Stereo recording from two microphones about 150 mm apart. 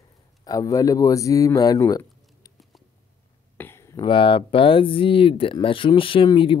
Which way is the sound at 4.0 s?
35° left (ahead or behind).